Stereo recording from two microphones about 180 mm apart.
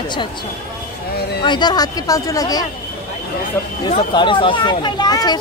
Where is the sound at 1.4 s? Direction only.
25° left (ahead or behind).